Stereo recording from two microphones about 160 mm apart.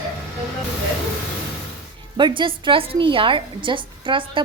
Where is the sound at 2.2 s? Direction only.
30° right (ahead or behind).